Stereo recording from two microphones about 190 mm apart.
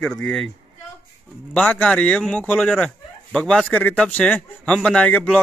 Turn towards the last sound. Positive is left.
turn(degrees=5)  # may be behind; listen again after turning